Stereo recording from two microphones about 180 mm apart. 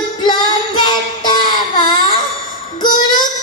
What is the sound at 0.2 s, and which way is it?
Child singing, 25° left (ahead or behind).